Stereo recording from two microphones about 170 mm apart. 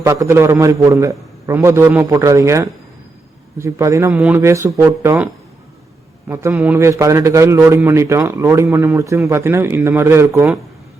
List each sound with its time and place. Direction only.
0.0 s a man's voice: 20° right (ahead or behind)